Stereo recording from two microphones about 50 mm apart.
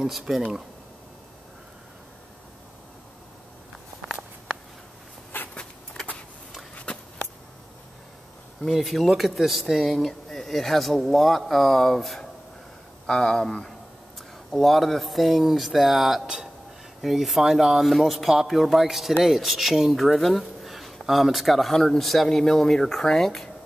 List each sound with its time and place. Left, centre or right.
0.0 s speech: centre
5.5 s a sound: left
8.6 s speech: centre
13.0 s speech: centre